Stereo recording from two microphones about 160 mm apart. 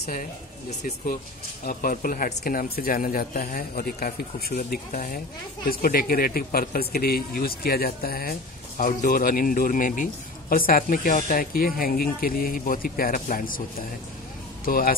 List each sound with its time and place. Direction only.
0.1 s speech: 50° left (ahead or behind)
14.6 s speech: 65° left (ahead or behind)